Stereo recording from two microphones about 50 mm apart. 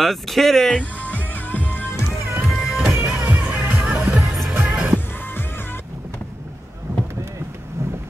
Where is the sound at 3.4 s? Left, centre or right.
Right.